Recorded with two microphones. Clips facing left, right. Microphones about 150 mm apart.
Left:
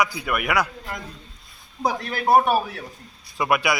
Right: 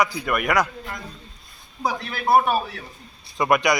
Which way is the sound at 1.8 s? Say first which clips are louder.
Left 2 dB; 45° left (ahead or behind).